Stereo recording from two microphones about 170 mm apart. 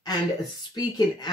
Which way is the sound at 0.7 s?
25° left (ahead or behind).